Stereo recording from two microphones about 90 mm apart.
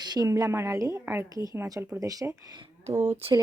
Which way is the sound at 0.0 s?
50° right (ahead or behind).